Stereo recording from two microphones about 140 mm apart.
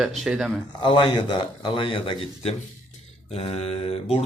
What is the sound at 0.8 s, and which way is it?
Speech, 35° left (ahead or behind).